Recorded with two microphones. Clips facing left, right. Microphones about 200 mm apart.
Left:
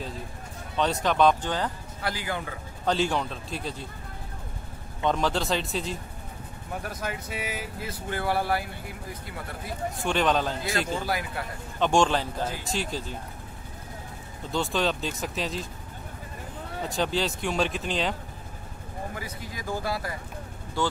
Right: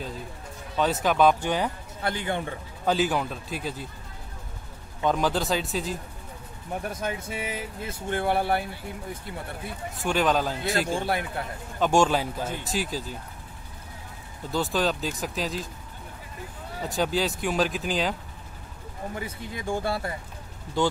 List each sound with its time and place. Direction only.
0.7 s speech: 5° right (ahead or behind)
2.0 s speech: 25° right (ahead or behind)
2.8 s speech: 5° right (ahead or behind)
5.0 s speech: centre (ahead or behind)
6.9 s speech: 25° right (ahead or behind)
10.0 s speech: 5° right (ahead or behind)
11.0 s speech: 25° right (ahead or behind)
11.8 s a man's voice: 5° right (ahead or behind)
14.5 s speech: 5° right (ahead or behind)
16.8 s speech: centre (ahead or behind)
19.1 s speech: 25° right (ahead or behind)
20.8 s a man's voice: 15° right (ahead or behind)